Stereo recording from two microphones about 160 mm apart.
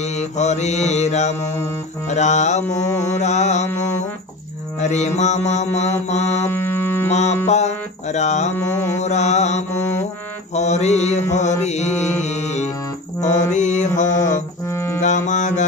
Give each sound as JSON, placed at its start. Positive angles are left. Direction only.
{"t": 0.0, "sound": "mantra", "side_deg": 45}
{"t": 4.7, "sound": "mantra", "side_deg": 45}
{"t": 6.5, "sound": "music", "side_deg": 15}
{"t": 7.1, "sound": "mantra", "side_deg": 45}
{"t": 7.4, "sound": "music", "side_deg": 45}
{"t": 8.9, "sound": "mantra", "side_deg": 45}
{"t": 14.7, "sound": "music", "side_deg": 15}
{"t": 15.0, "sound": "music", "side_deg": 50}